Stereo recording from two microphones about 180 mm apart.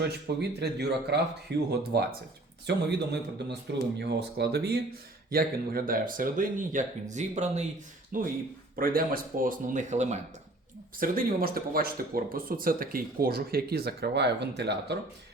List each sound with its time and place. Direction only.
0.0 s speech: 65° right (ahead or behind); by 10.2 s 40° right (ahead or behind)
11.0 s speech: 50° right (ahead or behind); by 14.9 s 70° right (ahead or behind)